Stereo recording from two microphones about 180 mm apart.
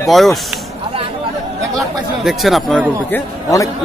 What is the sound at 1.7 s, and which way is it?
Speech, centre (ahead or behind).